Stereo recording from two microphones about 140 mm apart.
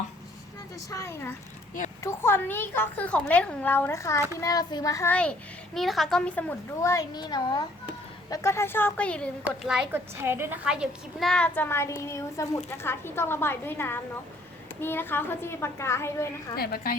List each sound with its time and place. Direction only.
0.9 s a child's voice: 20° left (ahead or behind)
5.1 s a child's voice: 10° left (ahead or behind)
6.8 s a child's voice: 25° left (ahead or behind); by 9.3 s 10° left (ahead or behind)
9.6 s a woman's voice: 5° right (ahead or behind)
10.2 s a woman's voice: 15° right (ahead or behind)
10.7 s a child's voice: centre (ahead or behind); by 16.6 s 20° left (ahead or behind)
16.6 s a woman's voice: 90° left